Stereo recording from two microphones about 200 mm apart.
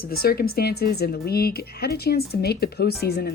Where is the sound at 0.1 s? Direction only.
50° left (ahead or behind).